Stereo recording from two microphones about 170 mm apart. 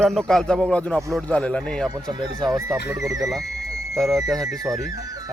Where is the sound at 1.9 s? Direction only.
25° right (ahead or behind).